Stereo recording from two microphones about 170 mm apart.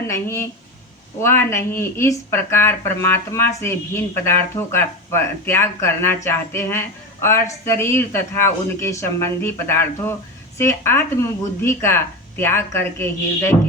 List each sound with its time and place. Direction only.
0.1 s speech: 15° left (ahead or behind)